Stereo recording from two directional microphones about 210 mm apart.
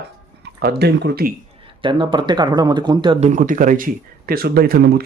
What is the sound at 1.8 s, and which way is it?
Speech, 25° right (ahead or behind).